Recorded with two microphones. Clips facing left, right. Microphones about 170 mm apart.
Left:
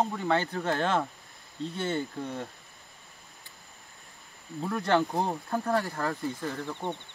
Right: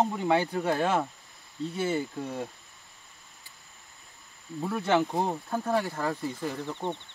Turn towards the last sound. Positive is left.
turn(degrees=-15)  # may be behind; listen again after turning